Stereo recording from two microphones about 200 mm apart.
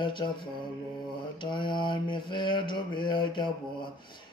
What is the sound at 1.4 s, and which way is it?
Mantra, 25° left (ahead or behind).